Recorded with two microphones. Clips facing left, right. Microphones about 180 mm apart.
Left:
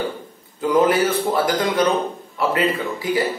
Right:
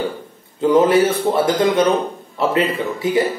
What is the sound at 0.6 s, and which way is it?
Speech, 25° right (ahead or behind).